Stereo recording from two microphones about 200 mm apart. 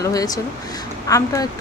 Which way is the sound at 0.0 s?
15° left (ahead or behind).